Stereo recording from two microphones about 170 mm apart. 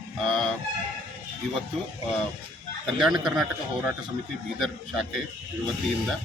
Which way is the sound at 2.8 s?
Centre (ahead or behind).